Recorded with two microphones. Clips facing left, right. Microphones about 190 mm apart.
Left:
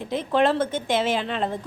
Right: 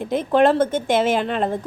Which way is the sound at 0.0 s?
50° right (ahead or behind).